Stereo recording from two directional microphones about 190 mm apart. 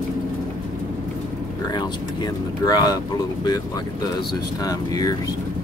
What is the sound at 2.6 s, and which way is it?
Speech, 20° left (ahead or behind).